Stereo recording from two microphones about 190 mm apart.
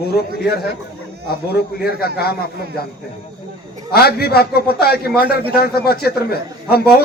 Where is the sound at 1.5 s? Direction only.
55° left (ahead or behind).